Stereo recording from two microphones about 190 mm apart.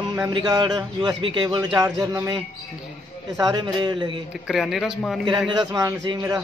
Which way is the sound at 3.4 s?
20° right (ahead or behind).